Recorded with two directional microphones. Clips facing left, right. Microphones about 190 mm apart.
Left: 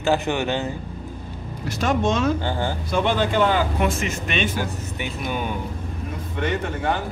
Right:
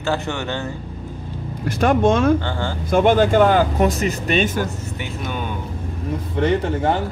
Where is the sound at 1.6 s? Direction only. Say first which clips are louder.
Right 5 dB; 50° right (ahead or behind).